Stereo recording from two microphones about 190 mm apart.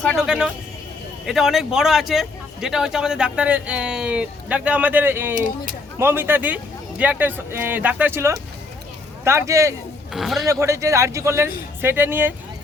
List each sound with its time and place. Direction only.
0.0 s speech: centre (ahead or behind); by 9.7 s 15° right (ahead or behind)
10.1 s speech: centre (ahead or behind)
10.4 s speech: 15° right (ahead or behind)